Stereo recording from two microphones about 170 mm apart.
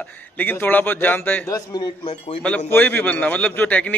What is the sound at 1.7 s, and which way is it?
Speech, 25° left (ahead or behind).